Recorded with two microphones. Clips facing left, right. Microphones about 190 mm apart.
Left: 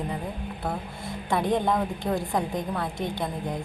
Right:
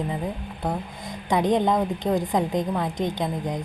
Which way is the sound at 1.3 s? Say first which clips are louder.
Right 3 dB; 20° right (ahead or behind).